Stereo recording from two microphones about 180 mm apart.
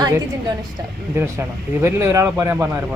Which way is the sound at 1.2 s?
15° right (ahead or behind).